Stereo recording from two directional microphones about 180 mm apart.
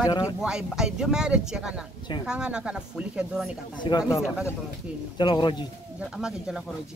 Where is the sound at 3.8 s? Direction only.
20° left (ahead or behind).